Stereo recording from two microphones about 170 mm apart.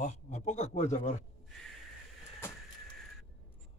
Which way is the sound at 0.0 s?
45° left (ahead or behind).